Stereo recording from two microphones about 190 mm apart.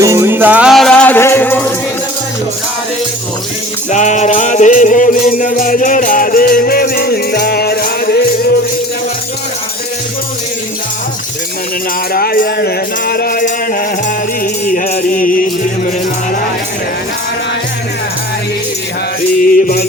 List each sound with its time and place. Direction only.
0.0 s music: 15° right (ahead or behind); by 1.7 s 10° left (ahead or behind)
3.9 s music: 40° left (ahead or behind)
12.1 s music: 50° left (ahead or behind)